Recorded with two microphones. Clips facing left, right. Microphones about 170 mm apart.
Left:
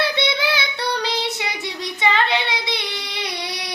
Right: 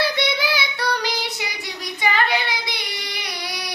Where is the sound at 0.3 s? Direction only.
25° left (ahead or behind).